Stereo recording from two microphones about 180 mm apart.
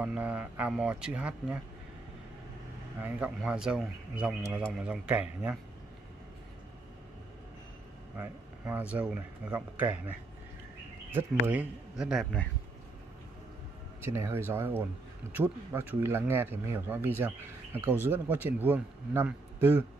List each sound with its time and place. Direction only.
0.0 s speech: 5° right (ahead or behind)
3.0 s speech: 10° right (ahead or behind)
8.2 s speech: 10° right (ahead or behind)
11.4 s speech: 5° right (ahead or behind)
14.0 s speech: 15° right (ahead or behind)